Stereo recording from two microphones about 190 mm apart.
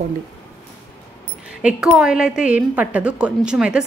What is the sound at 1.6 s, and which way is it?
A woman's voice, 5° right (ahead or behind).